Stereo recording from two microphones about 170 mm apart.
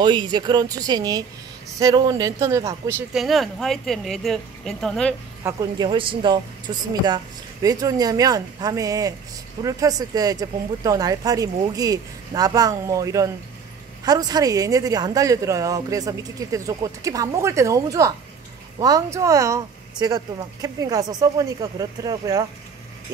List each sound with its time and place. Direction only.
0.0 s speech: 25° right (ahead or behind)
3.1 s speech: centre (ahead or behind)
5.4 s speech: 25° right (ahead or behind)